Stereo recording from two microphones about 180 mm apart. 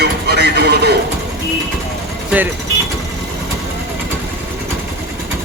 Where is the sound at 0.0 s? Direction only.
65° right (ahead or behind).